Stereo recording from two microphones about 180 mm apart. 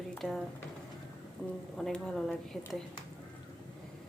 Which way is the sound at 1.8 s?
5° left (ahead or behind).